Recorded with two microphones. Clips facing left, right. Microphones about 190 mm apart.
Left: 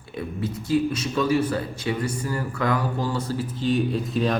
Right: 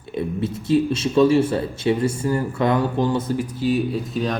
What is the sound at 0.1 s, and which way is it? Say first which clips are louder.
Speech: right 5 dB; 25° right (ahead or behind).